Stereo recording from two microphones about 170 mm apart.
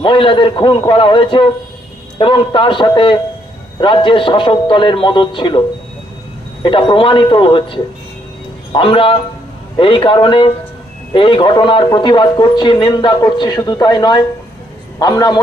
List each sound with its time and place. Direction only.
0.0 s a man's voice: 30° left (ahead or behind)